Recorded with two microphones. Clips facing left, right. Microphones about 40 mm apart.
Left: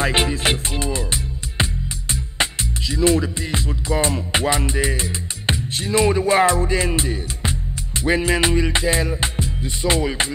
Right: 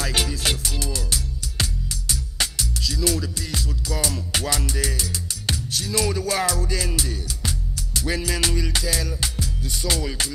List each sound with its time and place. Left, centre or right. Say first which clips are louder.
0.0 s music: left 6 dB; left